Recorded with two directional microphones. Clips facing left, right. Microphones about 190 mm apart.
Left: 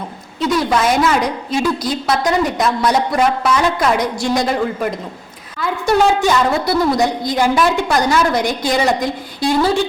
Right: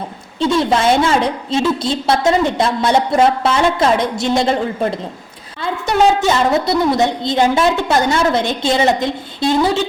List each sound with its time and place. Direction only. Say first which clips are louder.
0.3 s a woman's voice: right 1 dB; 25° right (ahead or behind)